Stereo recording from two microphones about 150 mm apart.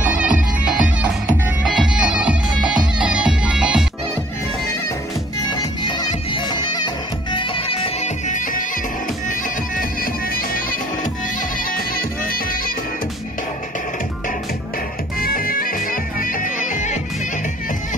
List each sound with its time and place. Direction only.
0.0 s music: 10° right (ahead or behind)
5.5 s bagpipes: 30° left (ahead or behind)
7.3 s music: 35° left (ahead or behind)
10.3 s music: 70° left (ahead or behind)
11.9 s music: 75° left (ahead or behind)
15.2 s bagpipes: 75° left (ahead or behind); by 17.0 s 55° left (ahead or behind)